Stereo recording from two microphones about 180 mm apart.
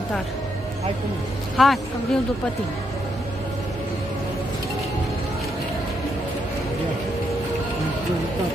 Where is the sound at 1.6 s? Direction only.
Centre (ahead or behind).